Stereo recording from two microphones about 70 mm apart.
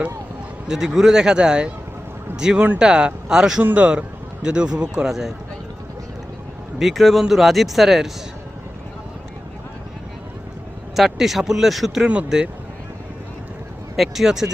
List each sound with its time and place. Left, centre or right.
0.7 s a man's voice: centre
3.6 s a man's voice: right; by 5.3 s centre
6.7 s speech: centre
10.9 s speech: centre
12.0 s a man's voice: centre
13.9 s speech: centre